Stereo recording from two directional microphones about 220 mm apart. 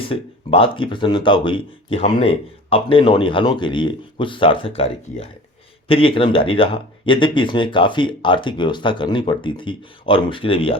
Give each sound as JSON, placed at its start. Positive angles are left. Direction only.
{"t": 0.0, "sound": "speech", "side_deg": 25}